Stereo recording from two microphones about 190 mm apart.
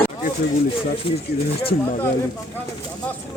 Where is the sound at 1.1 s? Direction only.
25° left (ahead or behind).